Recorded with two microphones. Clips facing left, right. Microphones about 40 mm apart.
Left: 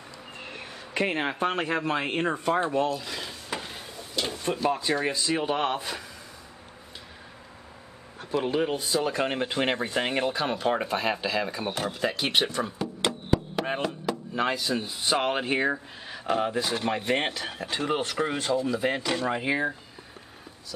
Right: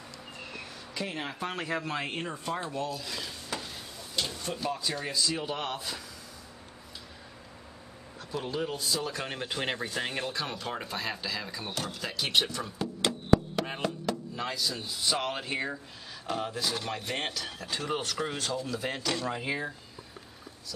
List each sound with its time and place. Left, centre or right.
0.4 s a man's voice: left
3.0 s dishes: centre
4.2 s a sound: left
4.6 s speech: left
8.4 s speech: left
13.8 s speech: centre
14.3 s speech: left